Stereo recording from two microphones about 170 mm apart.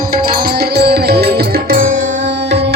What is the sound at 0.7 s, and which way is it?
Music, 75° right (ahead or behind).